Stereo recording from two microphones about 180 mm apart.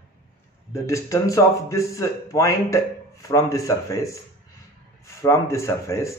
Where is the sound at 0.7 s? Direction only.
15° left (ahead or behind).